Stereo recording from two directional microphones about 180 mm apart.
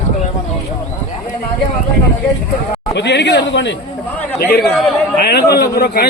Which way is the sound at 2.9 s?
70° left (ahead or behind).